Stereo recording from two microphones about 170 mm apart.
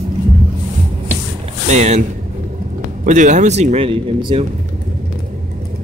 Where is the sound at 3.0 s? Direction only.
45° right (ahead or behind); by 4.4 s 30° right (ahead or behind).